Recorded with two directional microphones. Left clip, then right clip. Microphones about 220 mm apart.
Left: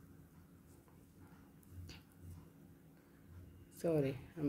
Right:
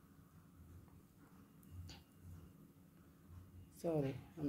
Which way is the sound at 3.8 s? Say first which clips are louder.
Left 4 dB; 20° left (ahead or behind).